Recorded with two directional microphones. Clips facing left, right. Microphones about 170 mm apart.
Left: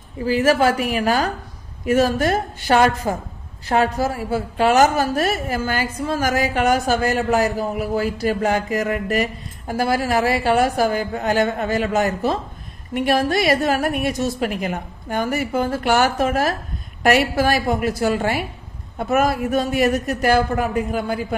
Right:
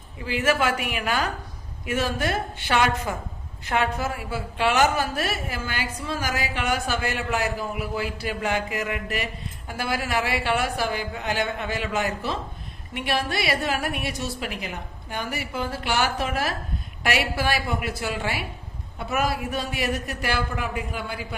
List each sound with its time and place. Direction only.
0.2 s a woman's voice: 40° left (ahead or behind)